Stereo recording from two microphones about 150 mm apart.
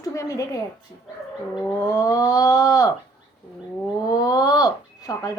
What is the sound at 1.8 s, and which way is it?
Speech, 25° left (ahead or behind).